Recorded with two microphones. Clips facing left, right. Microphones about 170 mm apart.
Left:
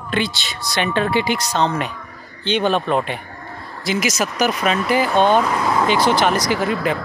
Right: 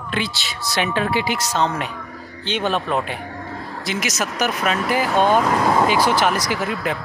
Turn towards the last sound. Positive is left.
turn(degrees=0)  # may be behind; listen again after turning